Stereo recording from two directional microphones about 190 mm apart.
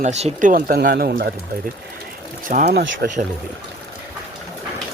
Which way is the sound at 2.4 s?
50° right (ahead or behind).